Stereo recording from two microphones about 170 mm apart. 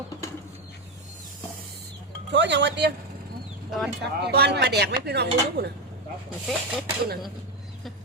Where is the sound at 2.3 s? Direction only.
90° right.